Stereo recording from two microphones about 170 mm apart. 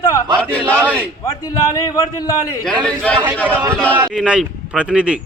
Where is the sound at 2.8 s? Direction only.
5° left (ahead or behind).